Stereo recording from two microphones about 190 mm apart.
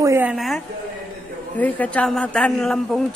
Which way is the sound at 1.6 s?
5° left (ahead or behind).